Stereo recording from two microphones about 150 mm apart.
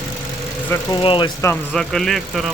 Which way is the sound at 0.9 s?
30° left (ahead or behind).